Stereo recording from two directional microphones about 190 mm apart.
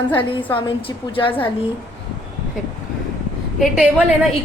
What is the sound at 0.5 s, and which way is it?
Speech, 25° left (ahead or behind).